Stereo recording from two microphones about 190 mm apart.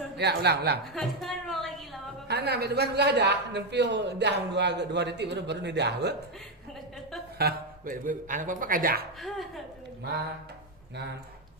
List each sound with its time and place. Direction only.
0.2 s a man's voice: 60° right (ahead or behind)
0.9 s a sound: centre (ahead or behind)
2.2 s a man's voice: 60° right (ahead or behind)
7.3 s a man's voice: 50° right (ahead or behind)